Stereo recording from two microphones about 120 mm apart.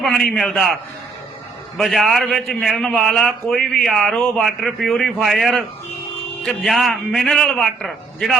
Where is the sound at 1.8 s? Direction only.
Centre (ahead or behind).